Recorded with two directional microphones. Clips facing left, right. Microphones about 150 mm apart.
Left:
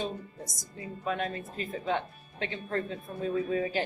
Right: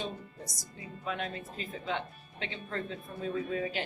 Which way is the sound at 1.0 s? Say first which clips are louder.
Left 4 dB; 40° left (ahead or behind).